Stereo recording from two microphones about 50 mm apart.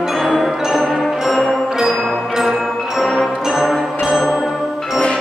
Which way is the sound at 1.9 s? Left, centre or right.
Centre.